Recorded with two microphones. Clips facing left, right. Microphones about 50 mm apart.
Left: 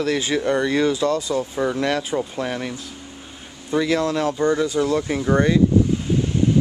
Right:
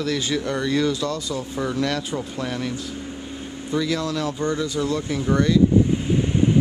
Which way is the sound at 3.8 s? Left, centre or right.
Left.